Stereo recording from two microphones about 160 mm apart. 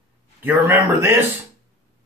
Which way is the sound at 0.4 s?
15° right (ahead or behind).